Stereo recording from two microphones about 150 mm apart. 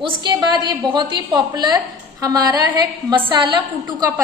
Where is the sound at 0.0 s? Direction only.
30° right (ahead or behind).